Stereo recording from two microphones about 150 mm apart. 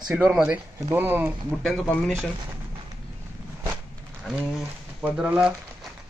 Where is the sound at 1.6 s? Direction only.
Centre (ahead or behind).